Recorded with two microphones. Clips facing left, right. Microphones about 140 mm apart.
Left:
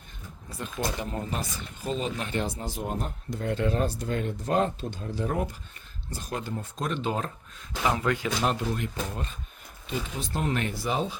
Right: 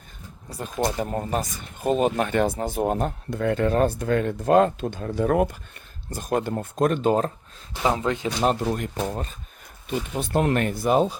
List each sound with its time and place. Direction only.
0.6 s speech: 45° right (ahead or behind); by 5.5 s 60° right (ahead or behind)
6.1 s speech: 50° right (ahead or behind)
7.9 s speech: 25° right (ahead or behind)
8.6 s speech: 45° right (ahead or behind)
10.2 s speech: 60° right (ahead or behind)